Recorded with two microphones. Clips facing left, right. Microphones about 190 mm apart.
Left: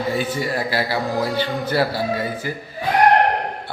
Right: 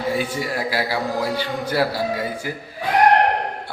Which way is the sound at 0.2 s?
10° right (ahead or behind).